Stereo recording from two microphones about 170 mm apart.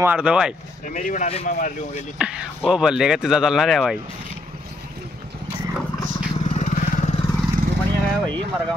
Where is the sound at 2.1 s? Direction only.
5° right (ahead or behind).